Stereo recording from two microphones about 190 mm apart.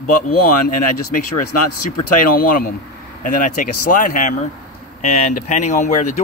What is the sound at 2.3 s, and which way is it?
Speech, 50° left (ahead or behind).